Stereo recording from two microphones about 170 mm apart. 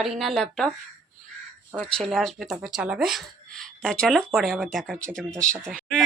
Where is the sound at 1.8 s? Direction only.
5° left (ahead or behind).